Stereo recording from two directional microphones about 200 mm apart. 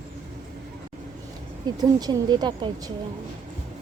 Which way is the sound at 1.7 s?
20° right (ahead or behind).